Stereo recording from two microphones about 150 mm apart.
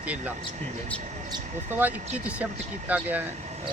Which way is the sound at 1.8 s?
10° right (ahead or behind).